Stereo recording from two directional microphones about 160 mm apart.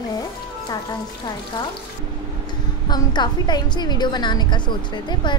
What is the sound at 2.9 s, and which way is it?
A woman's voice, 25° left (ahead or behind).